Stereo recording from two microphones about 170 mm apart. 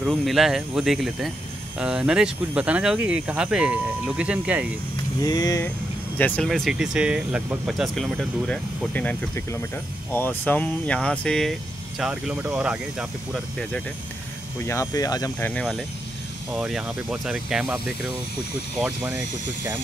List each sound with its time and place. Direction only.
0.0 s speech: centre (ahead or behind)
5.2 s speech: 20° left (ahead or behind)
6.1 s speech: 10° left (ahead or behind); by 12.7 s 5° right (ahead or behind)
13.3 s speech: 5° left (ahead or behind)
14.7 s speech: 20° left (ahead or behind)
16.5 s speech: 5° right (ahead or behind)